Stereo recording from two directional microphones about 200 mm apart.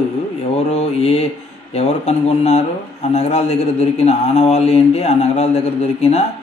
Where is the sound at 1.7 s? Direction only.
30° left (ahead or behind).